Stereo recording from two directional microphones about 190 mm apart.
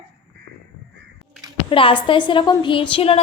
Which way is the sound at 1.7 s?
25° left (ahead or behind).